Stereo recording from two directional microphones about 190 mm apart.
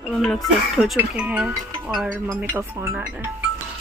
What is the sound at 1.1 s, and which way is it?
Speech, 5° right (ahead or behind).